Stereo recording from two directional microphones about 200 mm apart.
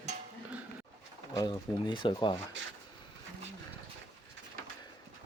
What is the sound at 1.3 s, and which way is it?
Speech, 20° left (ahead or behind).